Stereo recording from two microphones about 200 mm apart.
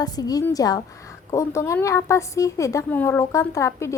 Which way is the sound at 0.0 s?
20° left (ahead or behind).